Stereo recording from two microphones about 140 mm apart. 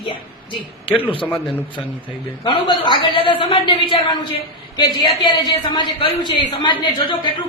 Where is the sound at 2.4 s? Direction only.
40° left (ahead or behind).